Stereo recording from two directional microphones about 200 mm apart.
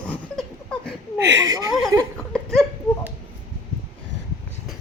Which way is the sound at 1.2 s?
60° right (ahead or behind).